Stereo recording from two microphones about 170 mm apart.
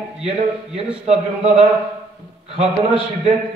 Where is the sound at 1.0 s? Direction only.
35° right (ahead or behind).